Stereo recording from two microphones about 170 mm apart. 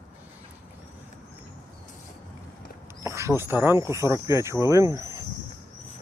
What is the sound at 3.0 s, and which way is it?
Speech, 15° right (ahead or behind).